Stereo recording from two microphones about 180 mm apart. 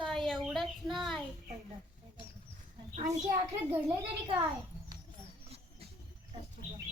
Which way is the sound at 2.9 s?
40° right (ahead or behind).